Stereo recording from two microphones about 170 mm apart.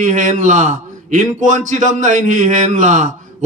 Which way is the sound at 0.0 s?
45° right (ahead or behind).